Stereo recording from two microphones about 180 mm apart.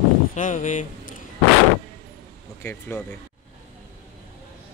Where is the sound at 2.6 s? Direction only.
15° left (ahead or behind).